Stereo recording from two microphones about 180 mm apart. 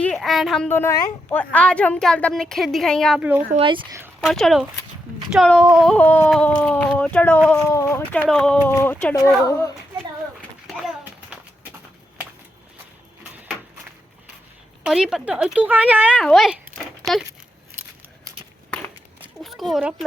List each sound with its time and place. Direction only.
0.0 s a woman's voice: centre (ahead or behind)
0.7 s speech: 10° left (ahead or behind)
3.5 s speech: 30° right (ahead or behind)
4.2 s speech: centre (ahead or behind)
7.7 s speech: 15° left (ahead or behind)
10.7 s a sound: centre (ahead or behind)
14.8 s speech: 5° right (ahead or behind)
19.4 s speech: centre (ahead or behind)